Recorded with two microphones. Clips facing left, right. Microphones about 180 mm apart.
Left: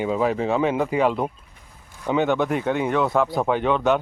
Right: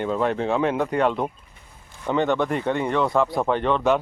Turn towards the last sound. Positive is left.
turn(degrees=0)  # may be behind; listen again after turning